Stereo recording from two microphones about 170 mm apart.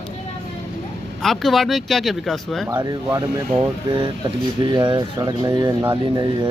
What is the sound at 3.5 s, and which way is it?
Speech, 25° right (ahead or behind).